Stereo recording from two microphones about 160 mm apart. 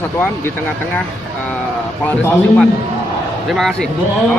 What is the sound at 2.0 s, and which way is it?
Speech, 10° left (ahead or behind).